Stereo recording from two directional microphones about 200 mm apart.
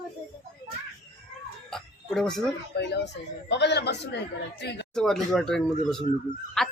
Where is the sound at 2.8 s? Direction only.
60° left (ahead or behind).